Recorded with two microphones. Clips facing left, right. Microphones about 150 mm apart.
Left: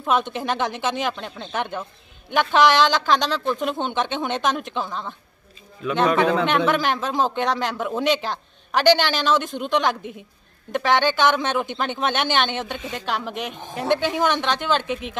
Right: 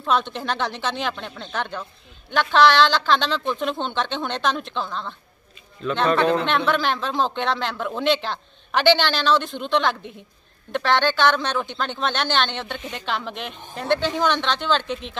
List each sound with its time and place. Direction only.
0.0 s speech: 10° left (ahead or behind)
1.0 s speech: 5° left (ahead or behind)
1.5 s speech: 15° left (ahead or behind)